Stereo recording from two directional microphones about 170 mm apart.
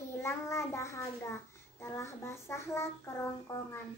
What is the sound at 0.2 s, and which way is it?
Child singing, 15° left (ahead or behind).